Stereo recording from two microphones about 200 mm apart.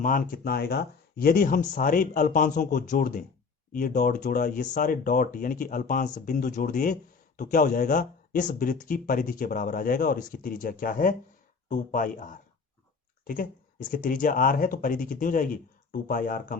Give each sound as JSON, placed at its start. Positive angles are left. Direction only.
{"t": 0.0, "sound": "speech", "side_deg": 45}